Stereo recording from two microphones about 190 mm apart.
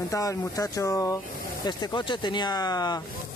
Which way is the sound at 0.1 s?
15° left (ahead or behind).